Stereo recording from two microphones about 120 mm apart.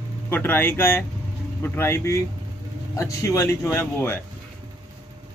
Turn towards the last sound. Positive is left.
turn(degrees=20)  # may be behind; listen again after turning